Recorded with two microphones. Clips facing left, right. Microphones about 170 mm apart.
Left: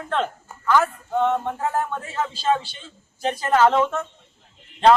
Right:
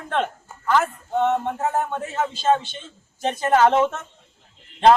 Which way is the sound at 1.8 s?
20° right (ahead or behind).